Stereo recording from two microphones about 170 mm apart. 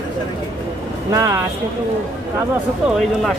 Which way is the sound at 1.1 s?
20° right (ahead or behind).